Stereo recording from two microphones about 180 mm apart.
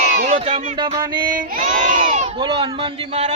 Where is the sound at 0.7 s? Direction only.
25° right (ahead or behind).